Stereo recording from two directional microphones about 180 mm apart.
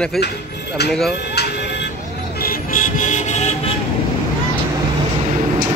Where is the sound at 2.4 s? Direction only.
50° left (ahead or behind).